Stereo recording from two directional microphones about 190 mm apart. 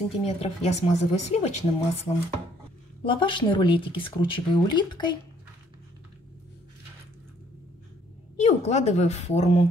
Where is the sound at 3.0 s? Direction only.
25° left (ahead or behind).